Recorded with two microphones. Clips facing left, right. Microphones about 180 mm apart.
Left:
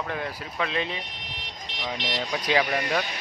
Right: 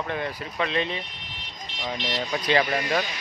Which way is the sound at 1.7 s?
75° left (ahead or behind).